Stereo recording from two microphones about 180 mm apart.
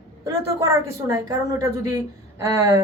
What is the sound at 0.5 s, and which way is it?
A woman's voice, 15° right (ahead or behind).